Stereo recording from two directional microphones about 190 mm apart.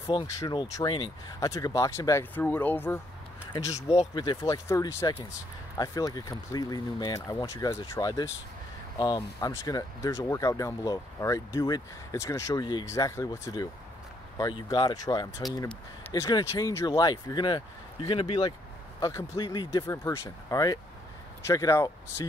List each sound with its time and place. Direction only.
0.0 s speech: 25° left (ahead or behind)
4.1 s speech: 20° left (ahead or behind)